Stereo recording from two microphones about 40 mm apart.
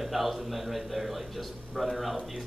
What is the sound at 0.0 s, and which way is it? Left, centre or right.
Speech, centre.